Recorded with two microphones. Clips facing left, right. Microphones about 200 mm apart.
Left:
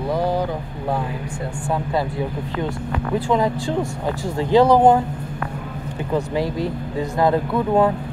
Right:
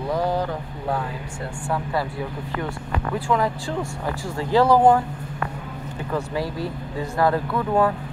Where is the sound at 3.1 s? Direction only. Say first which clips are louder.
Left 4 dB; 20° left (ahead or behind).